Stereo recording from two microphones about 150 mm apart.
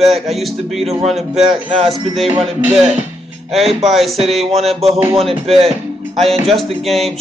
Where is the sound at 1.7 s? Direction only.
45° right (ahead or behind).